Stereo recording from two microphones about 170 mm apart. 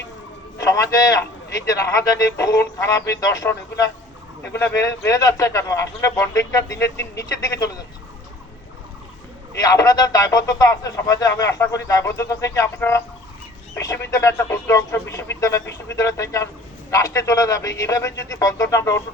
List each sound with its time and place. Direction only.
0.6 s a man's voice: 20° left (ahead or behind)
9.6 s speech: 20° left (ahead or behind)